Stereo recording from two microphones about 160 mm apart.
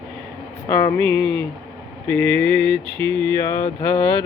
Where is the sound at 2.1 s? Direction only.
10° left (ahead or behind).